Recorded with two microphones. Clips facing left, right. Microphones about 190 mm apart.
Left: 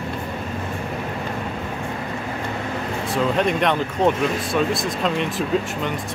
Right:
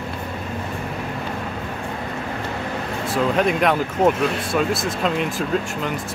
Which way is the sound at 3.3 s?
5° right (ahead or behind).